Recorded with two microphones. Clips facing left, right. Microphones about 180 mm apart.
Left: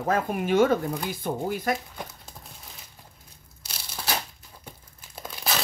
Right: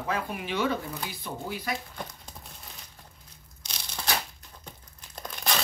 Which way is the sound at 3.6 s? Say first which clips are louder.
Even; 5° left (ahead or behind).